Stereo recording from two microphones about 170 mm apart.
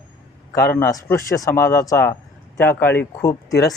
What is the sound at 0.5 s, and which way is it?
Speech, 15° left (ahead or behind).